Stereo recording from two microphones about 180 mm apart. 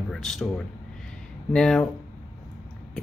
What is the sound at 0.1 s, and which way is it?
Speech, centre (ahead or behind).